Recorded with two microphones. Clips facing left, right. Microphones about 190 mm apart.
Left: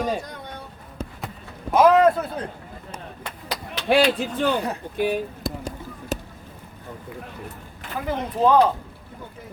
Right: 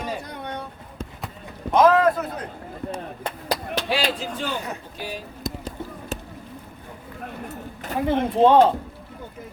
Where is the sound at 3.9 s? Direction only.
55° left (ahead or behind).